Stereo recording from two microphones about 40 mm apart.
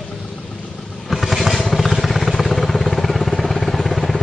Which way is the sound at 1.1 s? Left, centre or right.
Centre.